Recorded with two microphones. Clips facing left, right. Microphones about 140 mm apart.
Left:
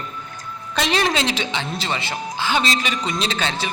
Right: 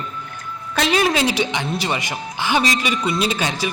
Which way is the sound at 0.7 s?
5° right (ahead or behind).